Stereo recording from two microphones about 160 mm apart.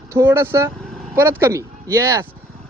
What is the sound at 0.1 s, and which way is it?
Speech, 15° right (ahead or behind).